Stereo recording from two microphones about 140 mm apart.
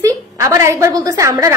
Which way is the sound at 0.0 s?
20° right (ahead or behind).